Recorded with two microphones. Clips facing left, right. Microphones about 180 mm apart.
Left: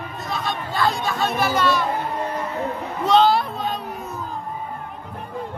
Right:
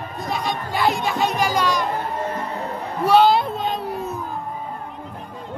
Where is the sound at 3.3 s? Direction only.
25° right (ahead or behind).